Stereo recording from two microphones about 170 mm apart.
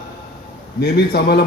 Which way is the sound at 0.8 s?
70° left (ahead or behind).